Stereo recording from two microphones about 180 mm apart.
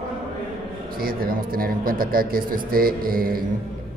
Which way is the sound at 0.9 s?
55° right (ahead or behind).